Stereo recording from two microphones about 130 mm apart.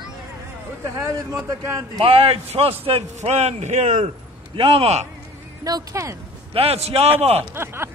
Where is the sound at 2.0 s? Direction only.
50° right (ahead or behind).